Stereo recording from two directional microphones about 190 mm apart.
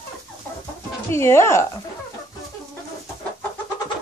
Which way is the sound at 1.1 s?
15° left (ahead or behind).